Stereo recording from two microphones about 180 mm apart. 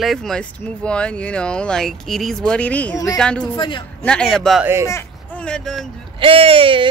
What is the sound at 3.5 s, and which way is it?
Speech, 25° left (ahead or behind).